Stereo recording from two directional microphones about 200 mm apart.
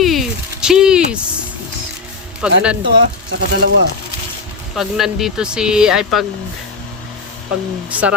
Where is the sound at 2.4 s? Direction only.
5° right (ahead or behind).